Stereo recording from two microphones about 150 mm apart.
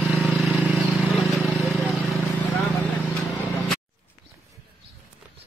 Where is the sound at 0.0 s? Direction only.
5° right (ahead or behind).